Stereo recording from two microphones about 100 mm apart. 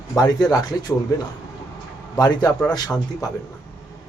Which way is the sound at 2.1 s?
40° left (ahead or behind).